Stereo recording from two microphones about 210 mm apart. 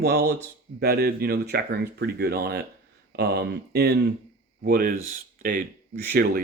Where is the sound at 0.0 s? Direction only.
50° right (ahead or behind).